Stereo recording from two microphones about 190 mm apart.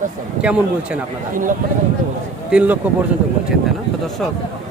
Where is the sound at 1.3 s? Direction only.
45° right (ahead or behind).